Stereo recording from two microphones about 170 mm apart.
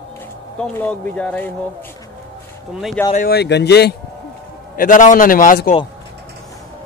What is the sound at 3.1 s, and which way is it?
Speech, 65° left (ahead or behind).